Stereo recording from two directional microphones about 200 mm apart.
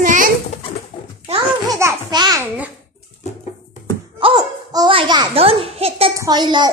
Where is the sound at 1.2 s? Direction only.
20° right (ahead or behind).